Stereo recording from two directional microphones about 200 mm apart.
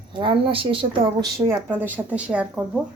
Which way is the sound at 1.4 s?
10° right (ahead or behind).